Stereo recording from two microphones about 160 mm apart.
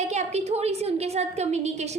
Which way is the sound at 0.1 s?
45° right (ahead or behind).